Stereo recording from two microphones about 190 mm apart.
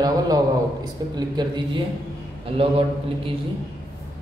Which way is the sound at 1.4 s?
25° right (ahead or behind).